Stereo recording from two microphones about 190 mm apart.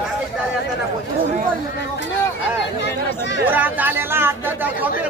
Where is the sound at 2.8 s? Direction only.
70° left (ahead or behind).